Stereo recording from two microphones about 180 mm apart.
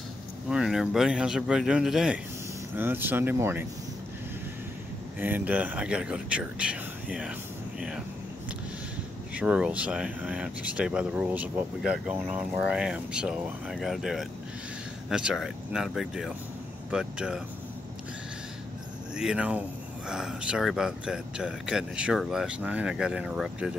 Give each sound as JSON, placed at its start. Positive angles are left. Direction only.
{"t": 0.5, "sound": "speech", "side_deg": -5}
{"t": 5.2, "sound": "speech", "side_deg": -10}
{"t": 9.3, "sound": "speech", "side_deg": -5}
{"t": 19.1, "sound": "speech", "side_deg": -5}